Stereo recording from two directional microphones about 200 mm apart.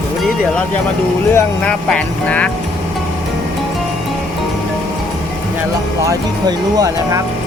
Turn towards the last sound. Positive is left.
turn(degrees=-15)  # may be behind; listen again after turning